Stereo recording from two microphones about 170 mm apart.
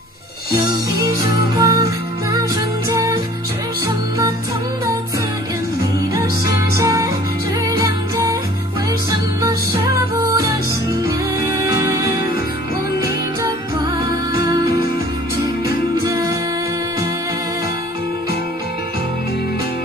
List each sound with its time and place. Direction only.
1.6 s music: 20° right (ahead or behind)
6.1 s music: 20° right (ahead or behind)
10.2 s music: 20° right (ahead or behind)
13.0 s music: 20° right (ahead or behind)
16.0 s music: 20° right (ahead or behind)